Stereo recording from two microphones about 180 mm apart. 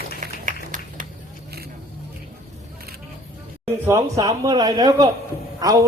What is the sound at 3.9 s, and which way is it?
A man's voice, 15° right (ahead or behind).